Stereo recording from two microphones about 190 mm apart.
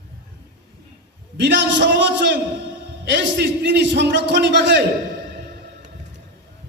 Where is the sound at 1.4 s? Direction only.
70° right (ahead or behind).